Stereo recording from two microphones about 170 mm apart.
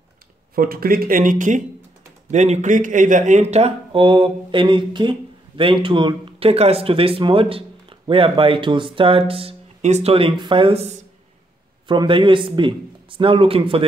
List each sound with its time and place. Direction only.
0.6 s a man's voice: 60° right (ahead or behind); by 13.8 s 30° right (ahead or behind)